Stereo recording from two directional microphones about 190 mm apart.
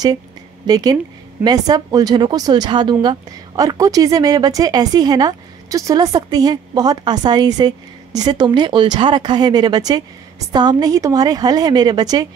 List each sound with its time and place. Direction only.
0.7 s speech: 20° right (ahead or behind)